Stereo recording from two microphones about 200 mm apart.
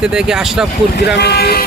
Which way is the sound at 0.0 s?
5° right (ahead or behind).